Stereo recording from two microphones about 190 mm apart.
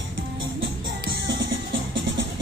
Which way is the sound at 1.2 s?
70° right (ahead or behind).